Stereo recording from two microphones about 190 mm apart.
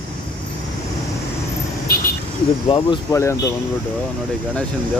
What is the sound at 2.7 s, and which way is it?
Speech, 30° left (ahead or behind).